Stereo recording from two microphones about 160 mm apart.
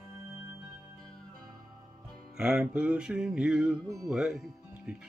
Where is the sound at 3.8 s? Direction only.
20° right (ahead or behind).